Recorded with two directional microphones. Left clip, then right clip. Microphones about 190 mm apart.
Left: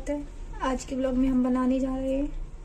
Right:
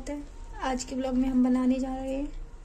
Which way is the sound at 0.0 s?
10° right (ahead or behind).